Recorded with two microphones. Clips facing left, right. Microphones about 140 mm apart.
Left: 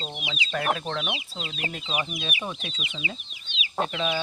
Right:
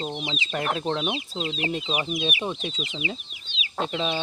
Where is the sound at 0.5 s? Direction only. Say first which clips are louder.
Right 1 dB; 20° right (ahead or behind).